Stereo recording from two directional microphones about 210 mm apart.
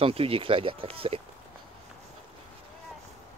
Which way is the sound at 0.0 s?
25° right (ahead or behind).